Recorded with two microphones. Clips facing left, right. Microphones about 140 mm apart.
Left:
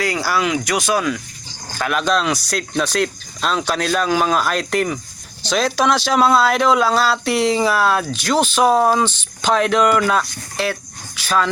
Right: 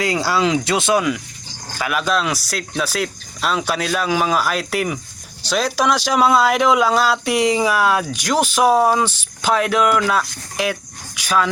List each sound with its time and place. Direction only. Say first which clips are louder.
0.0 s speech: right 1 dB; 25° right (ahead or behind)
1.8 s speech: left 1 dB; 5° right (ahead or behind)
10.6 s speech: even; 15° right (ahead or behind)